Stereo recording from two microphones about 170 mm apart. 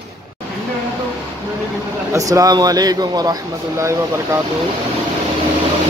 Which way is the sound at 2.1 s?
20° right (ahead or behind).